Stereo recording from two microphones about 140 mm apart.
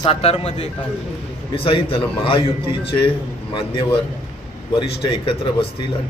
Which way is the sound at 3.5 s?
35° left (ahead or behind).